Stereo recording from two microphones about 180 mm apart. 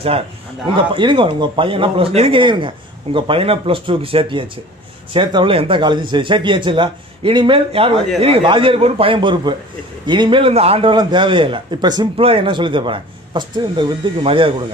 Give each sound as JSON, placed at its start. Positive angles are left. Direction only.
{"t": 0.7, "sound": "a man's voice", "side_deg": -25}